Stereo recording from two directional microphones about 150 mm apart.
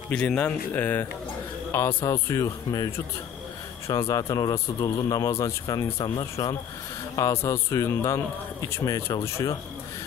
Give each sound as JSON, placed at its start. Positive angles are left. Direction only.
{"t": 0.1, "sound": "a man's voice", "side_deg": 5}
{"t": 4.1, "sound": "a man's voice", "side_deg": 25}